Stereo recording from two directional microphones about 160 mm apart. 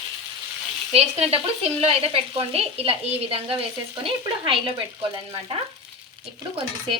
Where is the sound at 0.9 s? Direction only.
40° right (ahead or behind).